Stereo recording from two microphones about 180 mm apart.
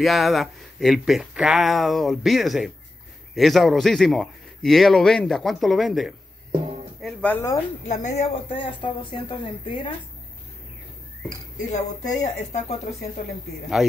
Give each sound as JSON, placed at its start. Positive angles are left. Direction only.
{"t": 0.0, "sound": "speech", "side_deg": 0}
{"t": 7.0, "sound": "music", "side_deg": 5}
{"t": 7.9, "sound": "speech", "side_deg": 40}
{"t": 8.5, "sound": "speech", "side_deg": 25}
{"t": 11.5, "sound": "speech", "side_deg": 40}